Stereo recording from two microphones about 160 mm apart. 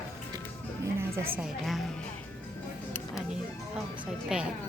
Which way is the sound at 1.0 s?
15° right (ahead or behind).